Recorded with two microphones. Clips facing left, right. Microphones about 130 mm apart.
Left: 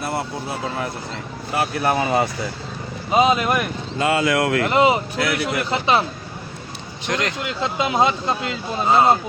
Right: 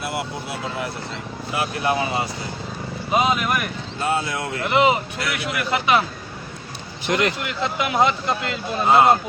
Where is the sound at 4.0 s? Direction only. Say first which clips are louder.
Left 5 dB; 90° left.